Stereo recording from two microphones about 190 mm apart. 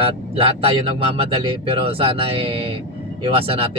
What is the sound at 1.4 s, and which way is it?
Speech, 30° right (ahead or behind).